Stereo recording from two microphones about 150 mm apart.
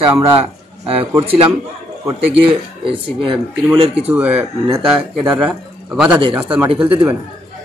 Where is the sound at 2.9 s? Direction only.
35° right (ahead or behind).